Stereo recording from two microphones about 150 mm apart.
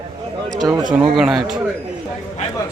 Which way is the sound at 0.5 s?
25° right (ahead or behind).